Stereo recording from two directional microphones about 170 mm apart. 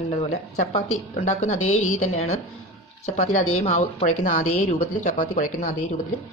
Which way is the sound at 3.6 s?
40° left (ahead or behind).